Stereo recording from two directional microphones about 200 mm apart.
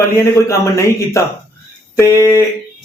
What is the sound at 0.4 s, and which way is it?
Speech, 15° left (ahead or behind).